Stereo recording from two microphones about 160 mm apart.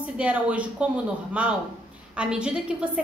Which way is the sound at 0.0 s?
10° right (ahead or behind).